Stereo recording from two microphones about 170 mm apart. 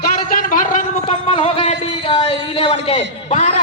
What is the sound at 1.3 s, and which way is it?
Speech, 30° left (ahead or behind).